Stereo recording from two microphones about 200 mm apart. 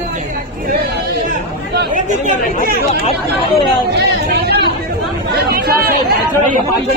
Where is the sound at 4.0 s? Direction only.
55° right (ahead or behind).